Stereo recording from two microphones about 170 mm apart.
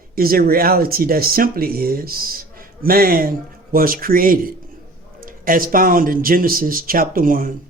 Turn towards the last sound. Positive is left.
turn(degrees=-55)  # may be behind; listen again after turning